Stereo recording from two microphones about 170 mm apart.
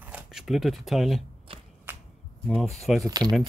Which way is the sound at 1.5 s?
30° right (ahead or behind).